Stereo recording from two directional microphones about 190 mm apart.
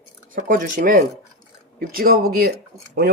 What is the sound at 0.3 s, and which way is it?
Speech, 45° right (ahead or behind).